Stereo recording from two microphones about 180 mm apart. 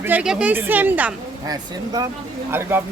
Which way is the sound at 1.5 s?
20° right (ahead or behind).